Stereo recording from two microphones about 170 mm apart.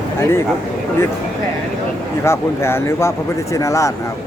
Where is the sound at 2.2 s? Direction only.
15° left (ahead or behind).